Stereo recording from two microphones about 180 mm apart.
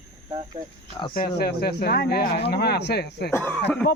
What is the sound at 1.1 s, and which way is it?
Speech, 60° left (ahead or behind).